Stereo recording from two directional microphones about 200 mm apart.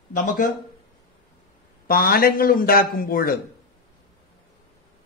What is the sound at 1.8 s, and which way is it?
Speech, 45° left (ahead or behind).